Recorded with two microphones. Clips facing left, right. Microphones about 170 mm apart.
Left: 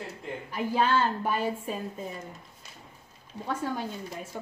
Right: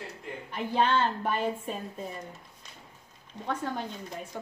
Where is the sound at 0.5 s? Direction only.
5° left (ahead or behind).